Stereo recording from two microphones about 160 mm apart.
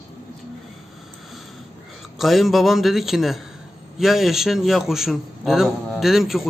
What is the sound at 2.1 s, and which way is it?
A man's voice, centre (ahead or behind).